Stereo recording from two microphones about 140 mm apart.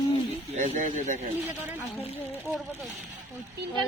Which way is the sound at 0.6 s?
60° right (ahead or behind).